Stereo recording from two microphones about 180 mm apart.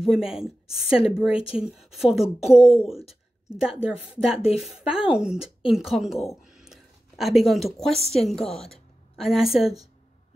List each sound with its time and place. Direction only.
0.0 s speech: centre (ahead or behind)
1.3 s speech: 30° left (ahead or behind)
1.6 s speech: 5° right (ahead or behind)
2.6 s speech: 30° left (ahead or behind)
3.1 s a woman's voice: 5° right (ahead or behind)